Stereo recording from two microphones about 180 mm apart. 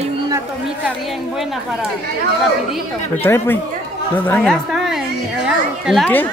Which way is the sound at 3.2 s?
10° left (ahead or behind).